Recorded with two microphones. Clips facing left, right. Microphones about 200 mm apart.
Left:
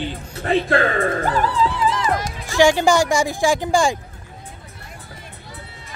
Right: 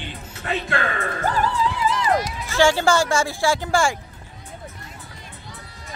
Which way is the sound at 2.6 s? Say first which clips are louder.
Left 3 dB; 15° left (ahead or behind).